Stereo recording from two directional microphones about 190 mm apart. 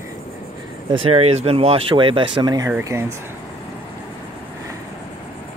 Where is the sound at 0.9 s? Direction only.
30° right (ahead or behind).